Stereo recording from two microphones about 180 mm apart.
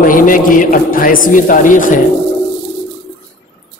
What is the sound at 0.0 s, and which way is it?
A man's voice, 50° left (ahead or behind).